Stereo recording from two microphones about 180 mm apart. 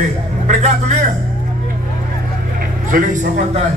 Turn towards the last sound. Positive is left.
turn(degrees=-50)  # may be behind; listen again after turning